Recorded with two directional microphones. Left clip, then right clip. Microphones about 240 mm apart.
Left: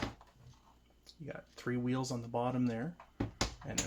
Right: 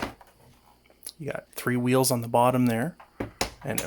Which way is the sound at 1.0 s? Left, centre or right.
Right.